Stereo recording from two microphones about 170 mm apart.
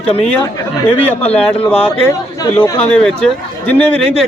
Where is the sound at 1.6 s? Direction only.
5° left (ahead or behind).